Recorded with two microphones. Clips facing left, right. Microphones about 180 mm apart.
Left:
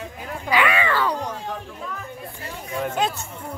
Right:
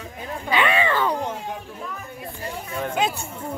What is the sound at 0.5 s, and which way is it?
Speech, 25° right (ahead or behind).